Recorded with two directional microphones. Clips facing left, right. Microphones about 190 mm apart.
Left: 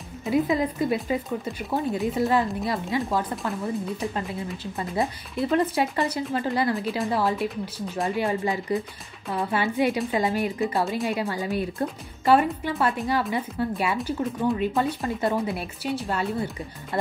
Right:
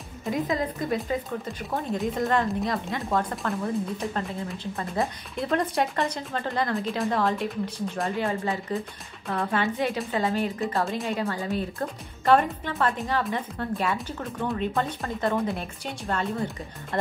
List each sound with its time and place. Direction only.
0.5 s speech: 15° left (ahead or behind)
8.3 s speech: 15° left (ahead or behind)